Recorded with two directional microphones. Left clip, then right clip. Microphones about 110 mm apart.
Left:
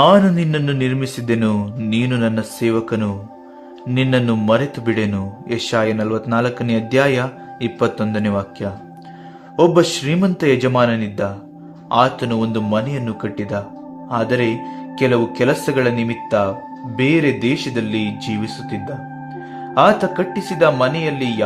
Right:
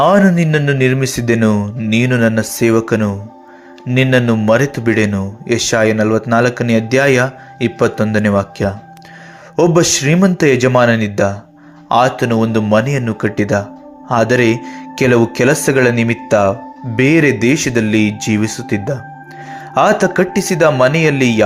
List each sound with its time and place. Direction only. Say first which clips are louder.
0.0 s speech: right 1 dB; 30° right (ahead or behind)